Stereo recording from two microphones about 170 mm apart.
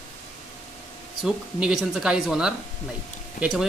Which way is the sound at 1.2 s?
5° right (ahead or behind).